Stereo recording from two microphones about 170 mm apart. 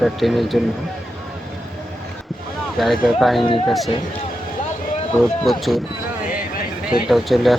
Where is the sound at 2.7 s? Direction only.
Centre (ahead or behind).